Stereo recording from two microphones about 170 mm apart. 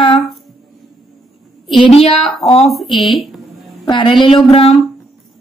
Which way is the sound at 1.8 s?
35° left (ahead or behind).